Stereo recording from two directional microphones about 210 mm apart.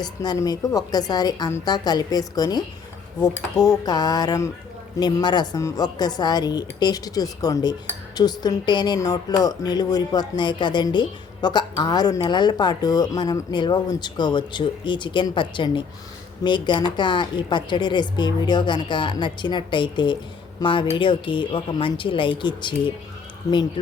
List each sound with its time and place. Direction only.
0.0 s speech: 20° left (ahead or behind)